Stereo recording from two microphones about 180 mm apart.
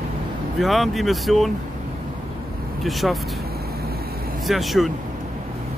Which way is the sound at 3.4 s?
60° right (ahead or behind).